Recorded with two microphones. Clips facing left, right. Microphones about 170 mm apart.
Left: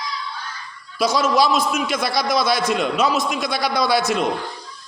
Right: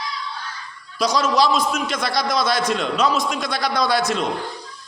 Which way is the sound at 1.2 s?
5° left (ahead or behind).